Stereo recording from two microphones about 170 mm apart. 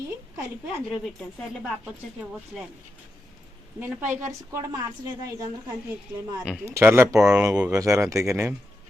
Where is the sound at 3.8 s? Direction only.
10° right (ahead or behind).